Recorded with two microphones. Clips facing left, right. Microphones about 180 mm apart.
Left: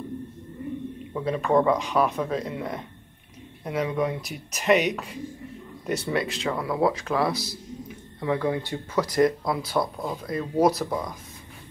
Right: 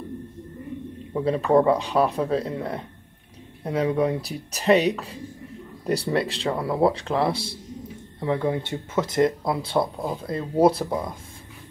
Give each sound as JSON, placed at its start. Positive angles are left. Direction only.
{"t": 1.1, "sound": "speech", "side_deg": -30}